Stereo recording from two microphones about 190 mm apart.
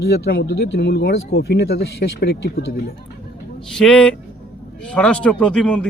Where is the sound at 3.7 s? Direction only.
5° left (ahead or behind).